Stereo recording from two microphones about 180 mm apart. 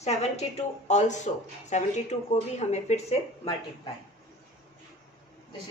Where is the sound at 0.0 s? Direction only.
35° left (ahead or behind).